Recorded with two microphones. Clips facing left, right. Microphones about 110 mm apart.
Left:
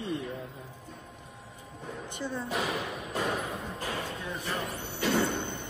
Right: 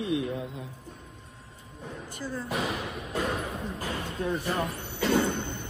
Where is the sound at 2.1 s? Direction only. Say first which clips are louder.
Even; 25° left (ahead or behind).